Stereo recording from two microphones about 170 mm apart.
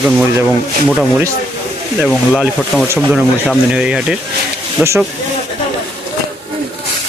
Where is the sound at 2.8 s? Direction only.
15° right (ahead or behind).